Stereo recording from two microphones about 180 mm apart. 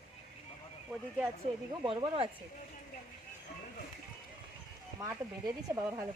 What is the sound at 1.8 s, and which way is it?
Speech, 30° right (ahead or behind).